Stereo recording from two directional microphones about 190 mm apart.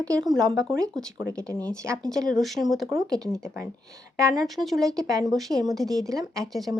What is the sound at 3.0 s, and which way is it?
Speech, 20° right (ahead or behind).